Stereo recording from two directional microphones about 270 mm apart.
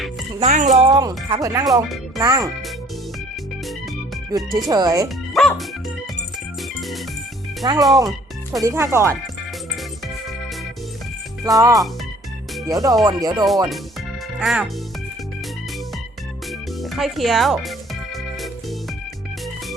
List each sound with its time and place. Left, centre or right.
0.3 s speech: right
4.3 s speech: centre
5.0 s speech: centre
7.6 s speech: centre
11.4 s speech: centre
14.3 s speech: centre
16.5 s speech: centre